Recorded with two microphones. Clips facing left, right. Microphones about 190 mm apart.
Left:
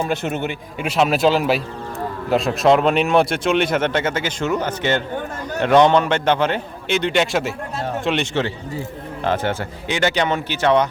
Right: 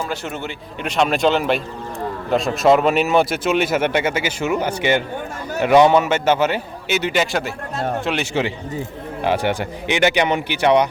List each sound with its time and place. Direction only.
0.0 s a man's voice: 20° left (ahead or behind)
0.8 s speech: 5° left (ahead or behind); by 10.8 s 15° right (ahead or behind)